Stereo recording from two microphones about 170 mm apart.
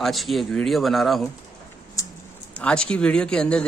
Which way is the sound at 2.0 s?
20° left (ahead or behind).